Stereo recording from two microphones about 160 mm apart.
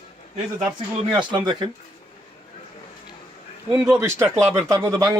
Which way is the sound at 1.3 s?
30° right (ahead or behind).